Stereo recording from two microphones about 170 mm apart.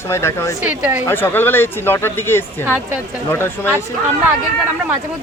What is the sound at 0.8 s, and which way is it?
Speech, 10° right (ahead or behind).